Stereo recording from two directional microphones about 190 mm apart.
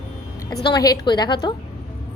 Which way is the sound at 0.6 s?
20° left (ahead or behind).